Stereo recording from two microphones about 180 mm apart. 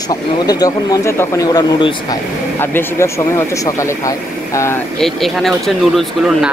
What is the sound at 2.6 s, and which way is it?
Speech, 10° left (ahead or behind).